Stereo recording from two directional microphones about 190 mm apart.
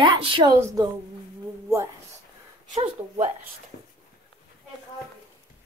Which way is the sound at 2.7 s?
40° right (ahead or behind).